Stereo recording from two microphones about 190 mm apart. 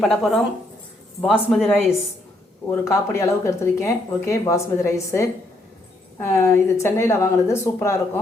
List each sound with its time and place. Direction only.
0.0 s speech: centre (ahead or behind)
2.6 s speech: 15° left (ahead or behind)